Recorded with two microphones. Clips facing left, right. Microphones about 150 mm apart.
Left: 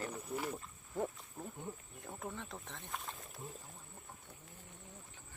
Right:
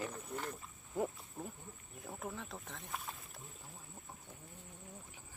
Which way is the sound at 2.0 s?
Centre (ahead or behind).